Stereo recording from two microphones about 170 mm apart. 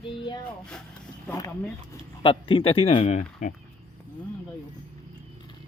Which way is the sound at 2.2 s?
30° left (ahead or behind).